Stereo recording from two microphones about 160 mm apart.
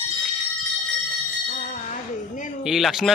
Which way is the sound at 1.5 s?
50° left (ahead or behind).